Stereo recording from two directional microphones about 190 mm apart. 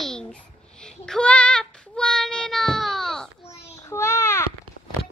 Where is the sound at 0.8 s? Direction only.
5° left (ahead or behind).